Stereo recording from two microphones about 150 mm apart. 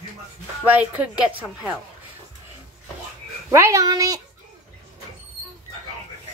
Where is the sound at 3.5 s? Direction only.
20° right (ahead or behind).